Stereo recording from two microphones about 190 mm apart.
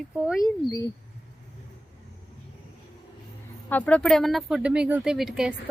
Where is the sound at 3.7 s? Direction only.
10° left (ahead or behind).